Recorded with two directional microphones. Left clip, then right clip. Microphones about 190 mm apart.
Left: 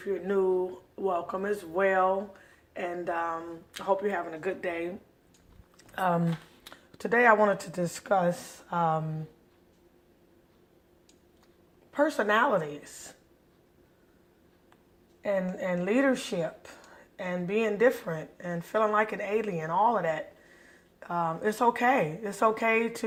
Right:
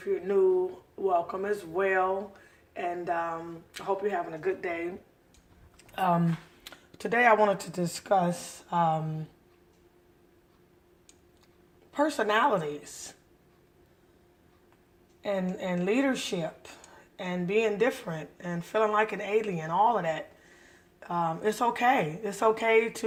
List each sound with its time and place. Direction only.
0.0 s a sound: 15° left (ahead or behind)
2.7 s speech: 15° left (ahead or behind); by 4.8 s 35° left (ahead or behind)
5.9 s speech: 5° left (ahead or behind)
11.9 s speech: 5° left (ahead or behind)
15.2 s speech: 5° left (ahead or behind)